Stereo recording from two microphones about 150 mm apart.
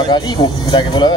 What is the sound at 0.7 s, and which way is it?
Speech, 30° left (ahead or behind).